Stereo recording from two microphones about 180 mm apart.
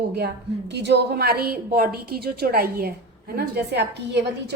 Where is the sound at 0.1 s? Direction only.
65° right (ahead or behind).